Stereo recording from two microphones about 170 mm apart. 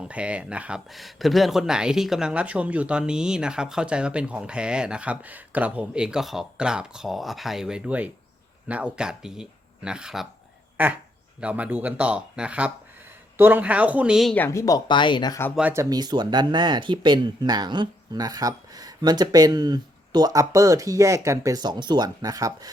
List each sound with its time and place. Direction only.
0.0 s speech: 5° right (ahead or behind)
14.3 s speech: 15° left (ahead or behind)
15.5 s speech: 10° right (ahead or behind)